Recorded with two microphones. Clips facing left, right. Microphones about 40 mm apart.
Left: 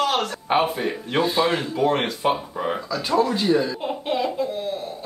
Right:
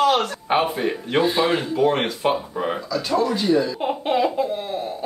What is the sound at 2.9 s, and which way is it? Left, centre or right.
Speech, centre.